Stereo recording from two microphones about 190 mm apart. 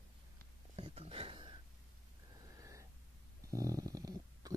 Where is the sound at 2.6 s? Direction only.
15° right (ahead or behind).